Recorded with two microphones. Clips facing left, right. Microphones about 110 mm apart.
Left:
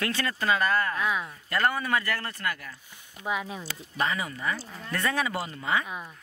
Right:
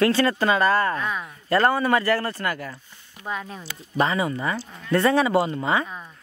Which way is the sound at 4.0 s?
30° right (ahead or behind).